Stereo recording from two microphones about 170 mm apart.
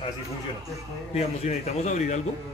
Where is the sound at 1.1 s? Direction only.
40° left (ahead or behind).